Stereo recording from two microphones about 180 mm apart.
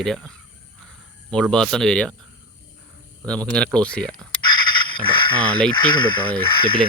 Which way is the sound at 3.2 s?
5° left (ahead or behind).